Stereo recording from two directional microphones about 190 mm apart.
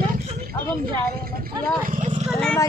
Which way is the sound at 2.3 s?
5° left (ahead or behind).